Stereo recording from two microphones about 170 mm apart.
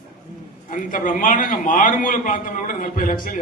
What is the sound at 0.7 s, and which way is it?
A man's voice, 50° left (ahead or behind).